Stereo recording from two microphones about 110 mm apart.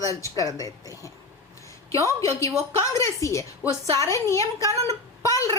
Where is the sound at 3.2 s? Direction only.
30° left (ahead or behind).